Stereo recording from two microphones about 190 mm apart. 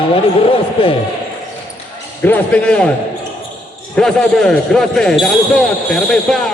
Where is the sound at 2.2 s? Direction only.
10° left (ahead or behind).